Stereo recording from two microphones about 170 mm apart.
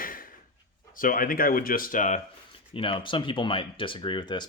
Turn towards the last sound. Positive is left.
turn(degrees=25)  # may be behind; listen again after turning